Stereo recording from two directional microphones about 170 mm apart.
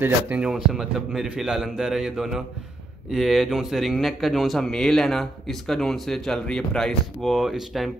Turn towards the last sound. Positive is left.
turn(degrees=0)  # may be behind; listen again after turning